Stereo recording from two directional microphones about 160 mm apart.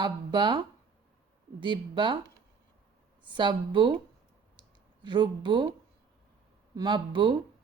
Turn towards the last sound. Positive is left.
turn(degrees=-30)  # may be behind; listen again after turning